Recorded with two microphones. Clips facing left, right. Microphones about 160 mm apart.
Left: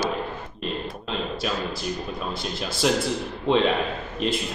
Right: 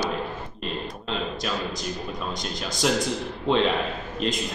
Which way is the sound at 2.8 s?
Centre (ahead or behind).